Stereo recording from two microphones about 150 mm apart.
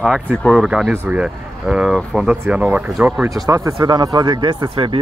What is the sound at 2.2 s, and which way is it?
Speech, 10° right (ahead or behind).